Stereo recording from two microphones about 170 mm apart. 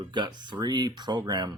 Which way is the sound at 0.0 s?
25° right (ahead or behind).